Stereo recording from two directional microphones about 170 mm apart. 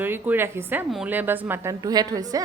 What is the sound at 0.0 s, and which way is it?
A woman's voice, 10° right (ahead or behind).